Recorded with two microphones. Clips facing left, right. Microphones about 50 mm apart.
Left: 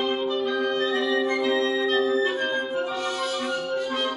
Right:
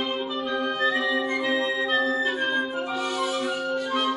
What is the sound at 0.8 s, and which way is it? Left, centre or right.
Music, centre.